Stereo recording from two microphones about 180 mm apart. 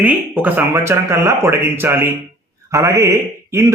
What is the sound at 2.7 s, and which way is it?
Mantra, 15° right (ahead or behind).